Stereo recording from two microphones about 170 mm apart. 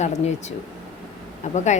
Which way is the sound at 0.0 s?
40° left (ahead or behind).